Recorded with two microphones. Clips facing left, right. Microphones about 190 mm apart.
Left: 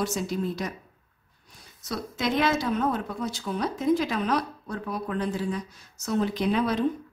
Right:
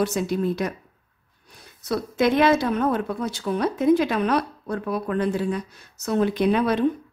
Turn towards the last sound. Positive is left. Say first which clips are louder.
# right 5 dB
turn(degrees=-60)  # may be behind; listen again after turning